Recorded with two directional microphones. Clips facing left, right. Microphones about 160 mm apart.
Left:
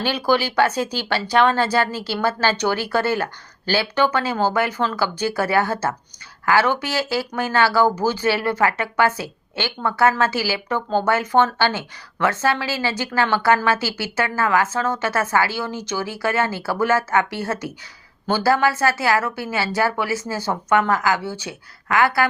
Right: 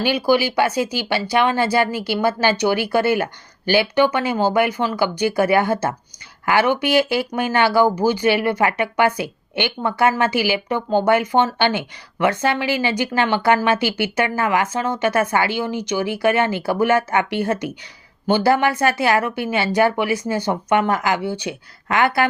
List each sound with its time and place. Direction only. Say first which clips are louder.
0.0 s speech: right 3 dB; 10° right (ahead or behind)